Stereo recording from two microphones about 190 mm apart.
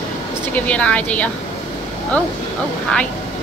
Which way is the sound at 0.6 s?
5° left (ahead or behind).